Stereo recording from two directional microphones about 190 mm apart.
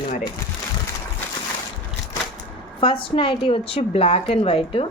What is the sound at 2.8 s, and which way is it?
A woman's voice, 25° left (ahead or behind).